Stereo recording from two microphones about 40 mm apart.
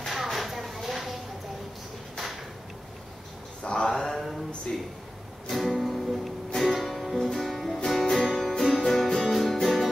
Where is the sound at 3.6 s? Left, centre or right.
Centre.